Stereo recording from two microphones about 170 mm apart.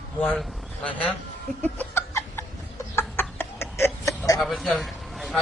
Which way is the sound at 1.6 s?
15° left (ahead or behind).